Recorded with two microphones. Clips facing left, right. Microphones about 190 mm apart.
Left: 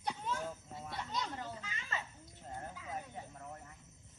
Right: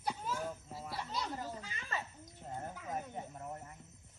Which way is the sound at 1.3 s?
10° right (ahead or behind).